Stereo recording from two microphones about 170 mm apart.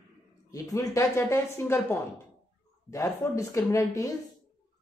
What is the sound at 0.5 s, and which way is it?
Speech, 20° left (ahead or behind).